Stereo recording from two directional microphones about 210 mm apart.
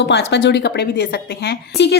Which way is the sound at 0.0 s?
55° left (ahead or behind).